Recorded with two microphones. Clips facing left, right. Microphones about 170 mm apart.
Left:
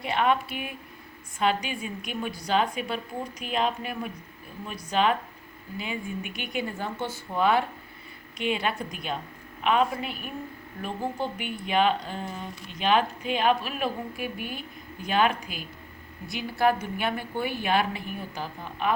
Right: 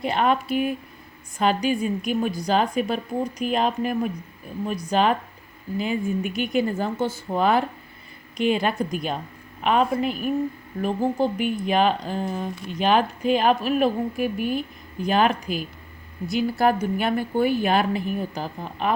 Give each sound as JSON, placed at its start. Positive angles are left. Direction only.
{"t": 0.0, "sound": "a woman's voice", "side_deg": -40}